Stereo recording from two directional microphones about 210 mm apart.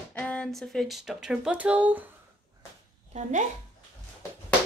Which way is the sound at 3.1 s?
35° right (ahead or behind).